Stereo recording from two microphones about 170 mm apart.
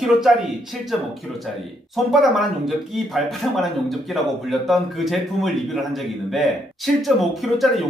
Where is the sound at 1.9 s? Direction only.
Centre (ahead or behind).